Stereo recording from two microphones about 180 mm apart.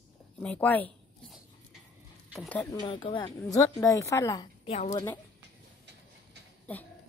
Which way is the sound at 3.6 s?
15° left (ahead or behind).